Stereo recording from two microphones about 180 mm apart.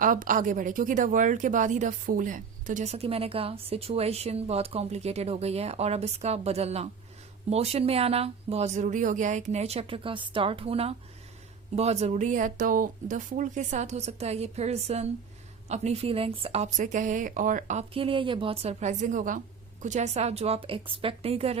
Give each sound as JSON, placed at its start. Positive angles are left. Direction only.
{"t": 0.0, "sound": "speech", "side_deg": -50}